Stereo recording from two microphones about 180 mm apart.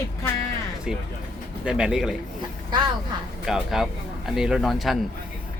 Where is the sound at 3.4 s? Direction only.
Centre (ahead or behind).